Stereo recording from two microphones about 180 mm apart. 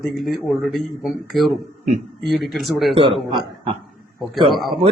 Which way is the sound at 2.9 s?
30° right (ahead or behind).